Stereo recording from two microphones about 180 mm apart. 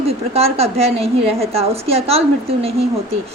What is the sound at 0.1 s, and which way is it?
A woman's voice, 35° right (ahead or behind).